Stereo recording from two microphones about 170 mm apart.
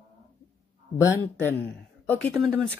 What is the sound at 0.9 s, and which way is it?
Speech, 20° left (ahead or behind).